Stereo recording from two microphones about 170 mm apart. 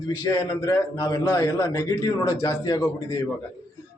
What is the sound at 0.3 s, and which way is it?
A man's voice, 15° left (ahead or behind).